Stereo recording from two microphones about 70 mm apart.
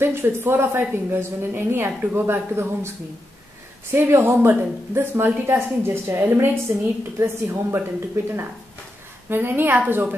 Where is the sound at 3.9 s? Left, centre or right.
Right.